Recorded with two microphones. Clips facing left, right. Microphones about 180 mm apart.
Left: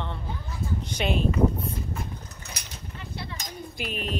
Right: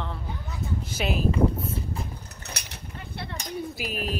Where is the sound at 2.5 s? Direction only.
65° right (ahead or behind).